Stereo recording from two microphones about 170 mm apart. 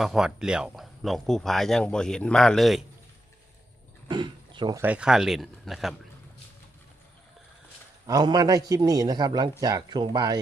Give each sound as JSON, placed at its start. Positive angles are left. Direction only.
{"t": 0.0, "sound": "speech", "side_deg": 0}
{"t": 4.1, "sound": "speech", "side_deg": -25}
{"t": 4.8, "sound": "speech", "side_deg": -5}
{"t": 8.0, "sound": "a man's voice", "side_deg": -20}